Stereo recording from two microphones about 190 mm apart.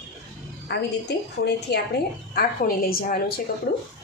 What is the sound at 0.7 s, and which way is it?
A woman's voice, 60° left (ahead or behind).